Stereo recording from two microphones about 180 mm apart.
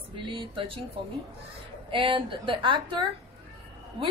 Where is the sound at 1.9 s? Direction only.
30° right (ahead or behind).